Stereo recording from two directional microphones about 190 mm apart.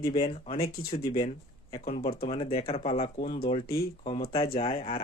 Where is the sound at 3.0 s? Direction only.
45° left (ahead or behind); by 5.0 s 30° left (ahead or behind).